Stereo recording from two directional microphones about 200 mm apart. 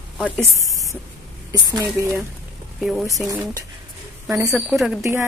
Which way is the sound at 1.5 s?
20° right (ahead or behind).